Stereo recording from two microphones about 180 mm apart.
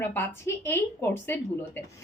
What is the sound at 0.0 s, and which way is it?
A woman's voice, 10° left (ahead or behind).